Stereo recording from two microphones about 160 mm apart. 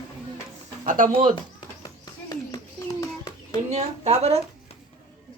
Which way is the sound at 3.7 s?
40° right (ahead or behind).